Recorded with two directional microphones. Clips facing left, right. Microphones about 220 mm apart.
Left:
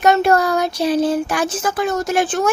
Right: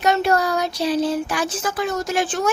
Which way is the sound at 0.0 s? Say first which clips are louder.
Left 4 dB; 50° left (ahead or behind).